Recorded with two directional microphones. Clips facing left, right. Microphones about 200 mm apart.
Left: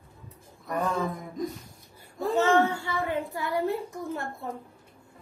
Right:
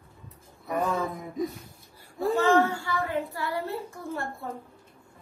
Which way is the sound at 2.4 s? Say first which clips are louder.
Even; 20° left (ahead or behind).